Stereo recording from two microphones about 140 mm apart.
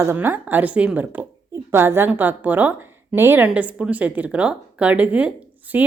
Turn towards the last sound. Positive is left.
turn(degrees=-10)  # may be behind; listen again after turning